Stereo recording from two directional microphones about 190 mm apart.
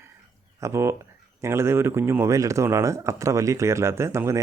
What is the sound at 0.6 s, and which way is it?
Speech, 15° right (ahead or behind).